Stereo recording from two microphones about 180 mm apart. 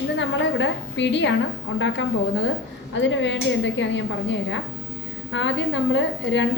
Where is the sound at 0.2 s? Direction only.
90° left.